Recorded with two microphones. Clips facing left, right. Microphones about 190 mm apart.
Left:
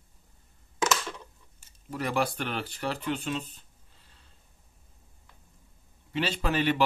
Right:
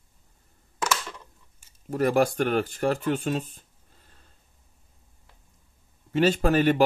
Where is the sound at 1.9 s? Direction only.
45° right (ahead or behind).